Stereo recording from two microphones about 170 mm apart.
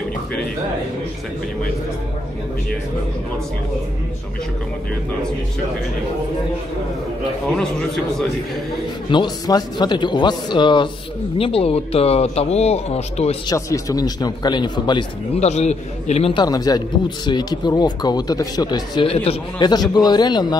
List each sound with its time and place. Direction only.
7.5 s a man's voice: 5° left (ahead or behind)
9.1 s speech: 25° left (ahead or behind)
13.5 s speech: 20° left (ahead or behind)
15.3 s speech: 40° left (ahead or behind); by 20.5 s 25° left (ahead or behind)